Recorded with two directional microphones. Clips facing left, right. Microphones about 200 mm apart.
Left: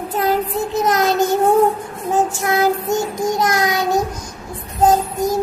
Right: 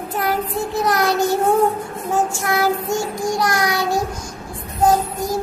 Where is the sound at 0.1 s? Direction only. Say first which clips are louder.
Left 3 dB; 20° left (ahead or behind).